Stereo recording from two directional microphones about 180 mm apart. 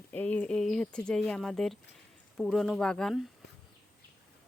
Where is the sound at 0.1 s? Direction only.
10° left (ahead or behind).